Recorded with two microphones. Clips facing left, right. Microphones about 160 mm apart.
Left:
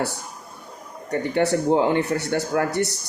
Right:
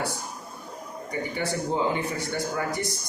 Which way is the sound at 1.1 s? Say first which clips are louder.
Left 9 dB; 70° left (ahead or behind).